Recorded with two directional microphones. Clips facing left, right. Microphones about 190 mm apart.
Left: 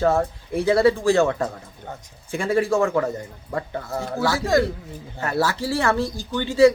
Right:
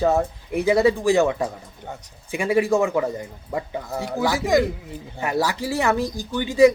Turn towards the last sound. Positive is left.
turn(degrees=-15)  # may be behind; listen again after turning